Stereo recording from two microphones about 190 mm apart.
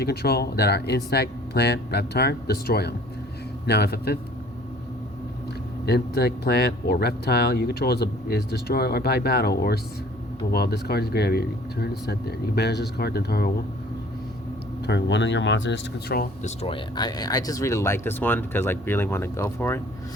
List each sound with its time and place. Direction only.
0.0 s speech: 55° left (ahead or behind)
5.8 s speech: 60° left (ahead or behind)
14.8 s speech: 65° left (ahead or behind); by 16.5 s 50° left (ahead or behind)
16.6 s speech: 30° left (ahead or behind); by 19.8 s 10° left (ahead or behind)